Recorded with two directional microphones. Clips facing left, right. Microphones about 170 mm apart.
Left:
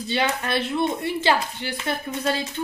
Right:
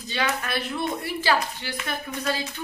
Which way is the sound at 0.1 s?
30° left (ahead or behind).